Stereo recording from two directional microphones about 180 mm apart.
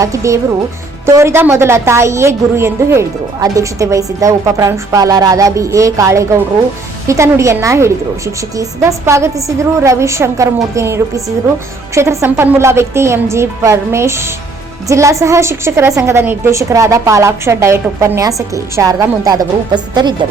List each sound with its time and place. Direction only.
0.0 s a woman's voice: 15° right (ahead or behind)